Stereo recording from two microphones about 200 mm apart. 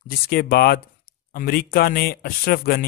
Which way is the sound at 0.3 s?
50° left (ahead or behind).